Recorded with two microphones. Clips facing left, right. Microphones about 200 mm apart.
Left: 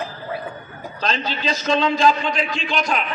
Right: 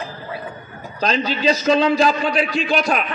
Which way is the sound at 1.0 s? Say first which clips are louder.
Right 6 dB; 40° right (ahead or behind).